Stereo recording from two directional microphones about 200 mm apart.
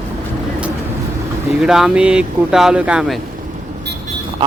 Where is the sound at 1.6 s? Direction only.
5° right (ahead or behind).